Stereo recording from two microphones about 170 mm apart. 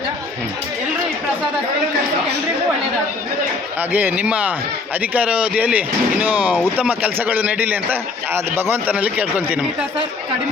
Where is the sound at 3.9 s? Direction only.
10° right (ahead or behind).